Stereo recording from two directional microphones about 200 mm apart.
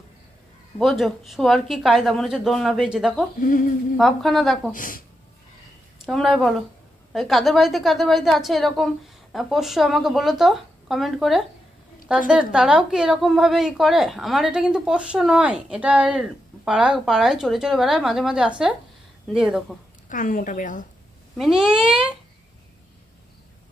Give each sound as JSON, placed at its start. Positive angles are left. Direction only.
{"t": 0.7, "sound": "a woman's voice", "side_deg": 0}
{"t": 3.3, "sound": "a sound", "side_deg": 40}
{"t": 3.9, "sound": "a woman's voice", "side_deg": 0}
{"t": 4.7, "sound": "a sound", "side_deg": 45}
{"t": 6.0, "sound": "a woman's voice", "side_deg": 0}
{"t": 20.1, "sound": "a woman's voice", "side_deg": 40}
{"t": 21.4, "sound": "a woman's voice", "side_deg": -5}